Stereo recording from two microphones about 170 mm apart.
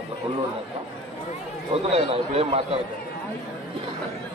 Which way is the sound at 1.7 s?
35° right (ahead or behind).